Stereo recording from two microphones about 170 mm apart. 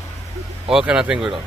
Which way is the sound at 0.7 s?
5° right (ahead or behind).